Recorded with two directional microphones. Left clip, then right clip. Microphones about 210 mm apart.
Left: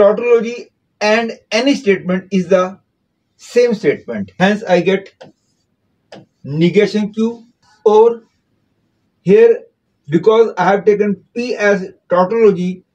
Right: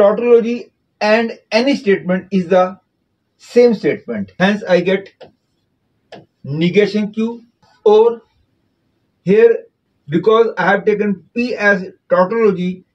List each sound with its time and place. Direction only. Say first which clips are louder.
0.0 s speech: left 1 dB; 25° left (ahead or behind)
1.0 s speech: even; 15° left (ahead or behind)
6.4 s speech: left 1 dB; 10° left (ahead or behind)
10.0 s speech: left 1 dB; 10° left (ahead or behind)